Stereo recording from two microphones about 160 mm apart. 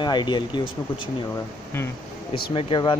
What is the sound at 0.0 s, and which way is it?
Speech, 30° left (ahead or behind).